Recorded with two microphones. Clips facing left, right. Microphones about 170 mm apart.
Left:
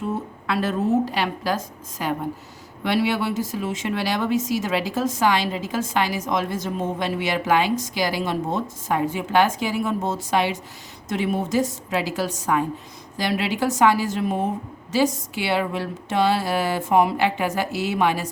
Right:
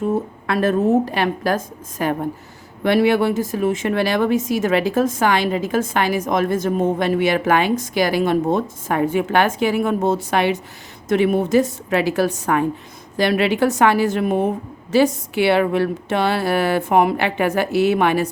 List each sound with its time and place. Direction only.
0.4 s a woman's voice: 50° right (ahead or behind)